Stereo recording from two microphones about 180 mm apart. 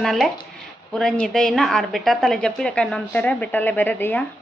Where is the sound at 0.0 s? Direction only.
Centre (ahead or behind).